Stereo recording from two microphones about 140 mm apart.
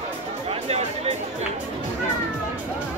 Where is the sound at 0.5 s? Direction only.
50° right (ahead or behind).